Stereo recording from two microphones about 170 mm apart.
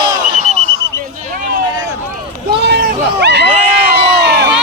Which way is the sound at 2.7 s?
80° right.